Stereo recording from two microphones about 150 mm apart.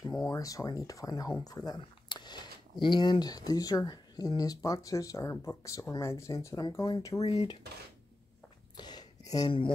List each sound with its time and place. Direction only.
0.3 s speech: 20° left (ahead or behind)
7.2 s speech: 45° left (ahead or behind)
8.7 s a sound: 30° left (ahead or behind)